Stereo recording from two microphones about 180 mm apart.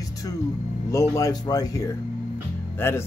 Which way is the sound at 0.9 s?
15° left (ahead or behind).